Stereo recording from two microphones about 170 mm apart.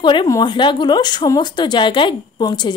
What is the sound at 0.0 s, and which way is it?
A woman's voice, 25° left (ahead or behind).